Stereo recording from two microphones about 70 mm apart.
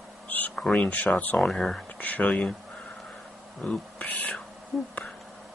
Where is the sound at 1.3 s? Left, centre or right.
Centre.